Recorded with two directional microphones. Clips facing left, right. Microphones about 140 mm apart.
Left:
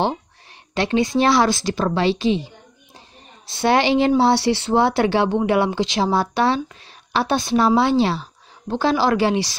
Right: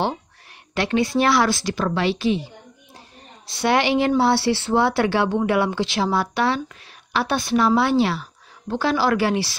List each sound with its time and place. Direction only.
0.7 s speech: 25° left (ahead or behind)
3.5 s speech: 30° left (ahead or behind)